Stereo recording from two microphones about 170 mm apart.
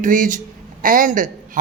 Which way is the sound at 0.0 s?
50° right (ahead or behind).